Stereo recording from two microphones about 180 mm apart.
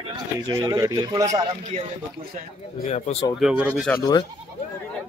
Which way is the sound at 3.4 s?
5° right (ahead or behind).